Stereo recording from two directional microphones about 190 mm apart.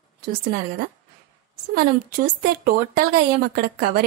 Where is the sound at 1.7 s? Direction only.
55° right (ahead or behind).